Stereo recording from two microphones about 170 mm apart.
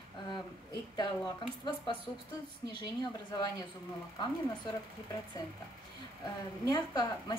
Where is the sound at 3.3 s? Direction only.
25° left (ahead or behind).